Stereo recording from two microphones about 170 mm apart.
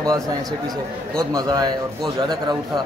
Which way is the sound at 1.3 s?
20° right (ahead or behind).